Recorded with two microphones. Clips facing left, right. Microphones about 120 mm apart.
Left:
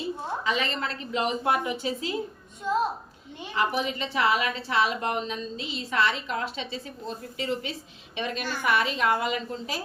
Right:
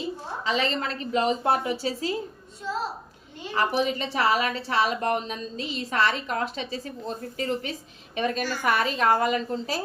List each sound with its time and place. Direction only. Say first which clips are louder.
0.4 s a woman's voice: right 4 dB; 35° right (ahead or behind)
3.5 s a woman's voice: right 3 dB; 40° right (ahead or behind)